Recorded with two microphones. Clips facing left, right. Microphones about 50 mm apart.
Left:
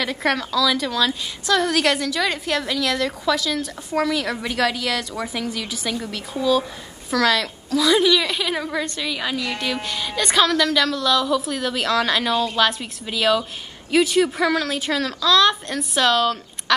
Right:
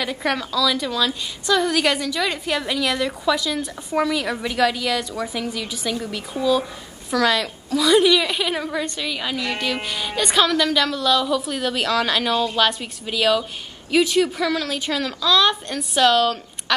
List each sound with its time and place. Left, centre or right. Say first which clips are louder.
0.0 s a woman's voice: left 1 dB; centre
1.6 s a woman's voice: even; centre
3.4 s a woman's voice: even; centre
5.1 s speech: right 1 dB; centre
5.4 s a woman's voice: even; centre
7.1 s a woman's voice: even; centre
14.3 s speech: left 2 dB; left
14.6 s a woman's voice: left 1 dB; centre
15.0 s a woman's voice: left 1 dB; centre
16.1 s speech: right 1 dB; centre